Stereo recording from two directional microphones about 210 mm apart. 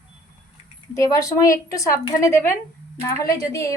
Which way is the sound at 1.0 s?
15° left (ahead or behind).